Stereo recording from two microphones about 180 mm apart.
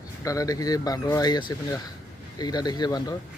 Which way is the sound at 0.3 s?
20° left (ahead or behind).